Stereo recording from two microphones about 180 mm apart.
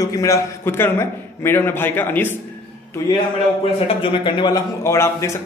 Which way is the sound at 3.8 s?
30° left (ahead or behind).